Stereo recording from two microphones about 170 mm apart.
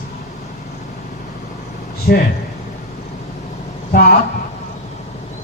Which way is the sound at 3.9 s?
65° left (ahead or behind).